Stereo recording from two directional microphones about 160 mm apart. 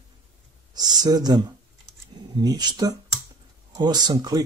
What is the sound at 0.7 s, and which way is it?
Speech, 25° right (ahead or behind).